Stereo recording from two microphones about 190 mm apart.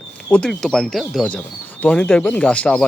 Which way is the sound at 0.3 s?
5° left (ahead or behind).